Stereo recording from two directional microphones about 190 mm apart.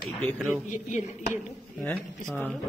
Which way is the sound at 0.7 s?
40° left (ahead or behind).